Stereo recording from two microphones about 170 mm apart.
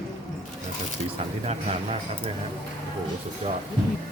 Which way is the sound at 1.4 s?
35° right (ahead or behind).